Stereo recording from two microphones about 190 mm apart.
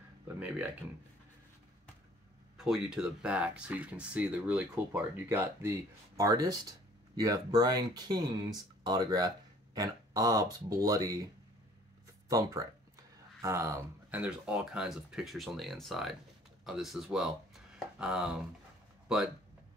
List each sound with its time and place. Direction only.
2.5 s speech: centre (ahead or behind); by 11.2 s 20° right (ahead or behind)
12.3 s speech: 15° right (ahead or behind)
14.2 s speech: 5° right (ahead or behind)